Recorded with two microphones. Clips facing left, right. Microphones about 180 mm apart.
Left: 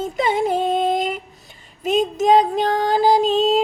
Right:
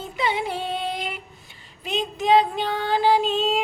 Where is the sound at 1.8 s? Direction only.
45° left (ahead or behind).